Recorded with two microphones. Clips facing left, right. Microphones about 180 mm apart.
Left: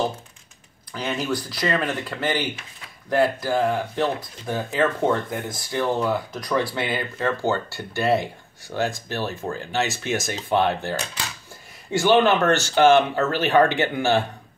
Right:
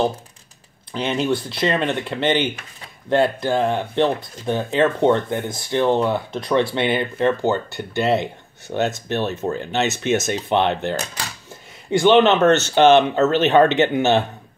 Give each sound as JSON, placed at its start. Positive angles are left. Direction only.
{"t": 0.9, "sound": "speech", "side_deg": -25}